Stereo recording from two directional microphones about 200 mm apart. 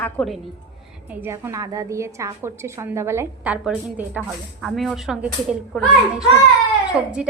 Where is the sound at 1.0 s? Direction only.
10° right (ahead or behind).